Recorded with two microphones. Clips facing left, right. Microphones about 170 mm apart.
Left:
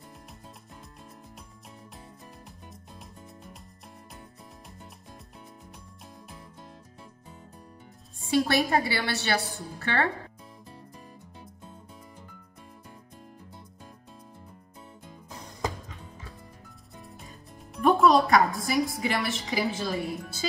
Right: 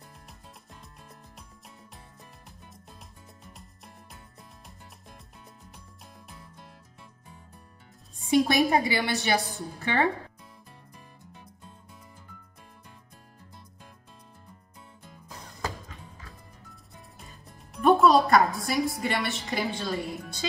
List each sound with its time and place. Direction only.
8.3 s a woman's voice: 15° right (ahead or behind)
17.7 s a woman's voice: centre (ahead or behind)